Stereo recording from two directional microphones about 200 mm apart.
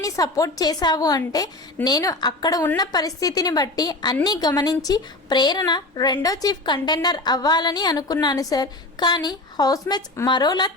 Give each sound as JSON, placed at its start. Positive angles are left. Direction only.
{"t": 0.0, "sound": "a woman's voice", "side_deg": 15}